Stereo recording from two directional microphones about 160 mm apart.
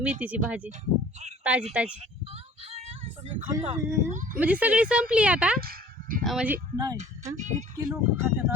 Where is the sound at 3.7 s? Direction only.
15° right (ahead or behind).